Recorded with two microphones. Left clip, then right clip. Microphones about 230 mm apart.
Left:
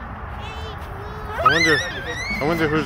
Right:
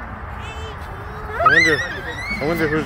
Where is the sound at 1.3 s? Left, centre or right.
Left.